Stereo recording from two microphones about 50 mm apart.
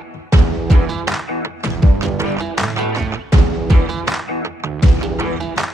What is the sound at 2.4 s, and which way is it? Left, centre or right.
Music, centre.